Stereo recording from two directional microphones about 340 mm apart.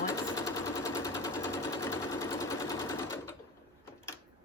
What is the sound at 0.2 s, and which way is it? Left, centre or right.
Machine gun, centre.